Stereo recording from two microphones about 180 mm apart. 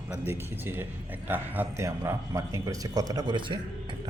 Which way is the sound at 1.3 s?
10° right (ahead or behind).